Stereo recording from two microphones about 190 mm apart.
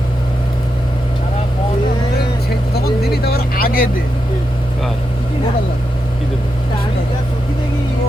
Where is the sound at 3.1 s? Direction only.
55° left (ahead or behind).